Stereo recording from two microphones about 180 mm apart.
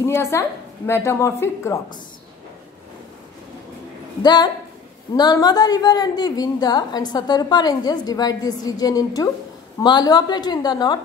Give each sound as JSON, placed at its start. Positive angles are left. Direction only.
{"t": 0.0, "sound": "a woman's voice", "side_deg": 15}
{"t": 4.2, "sound": "a woman's voice", "side_deg": 25}